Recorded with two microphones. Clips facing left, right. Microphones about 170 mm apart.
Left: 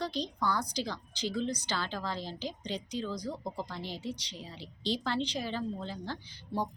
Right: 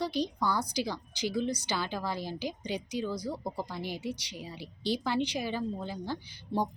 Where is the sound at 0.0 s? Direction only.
10° right (ahead or behind).